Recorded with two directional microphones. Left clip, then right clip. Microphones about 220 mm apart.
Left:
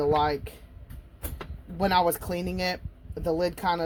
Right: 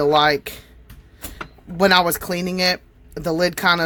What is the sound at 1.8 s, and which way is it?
Speech, 25° right (ahead or behind).